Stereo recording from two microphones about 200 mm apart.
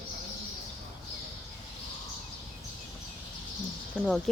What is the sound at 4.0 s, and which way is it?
Speech, 5° left (ahead or behind).